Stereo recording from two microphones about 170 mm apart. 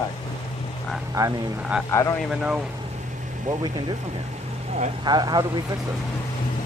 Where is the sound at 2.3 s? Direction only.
5° right (ahead or behind).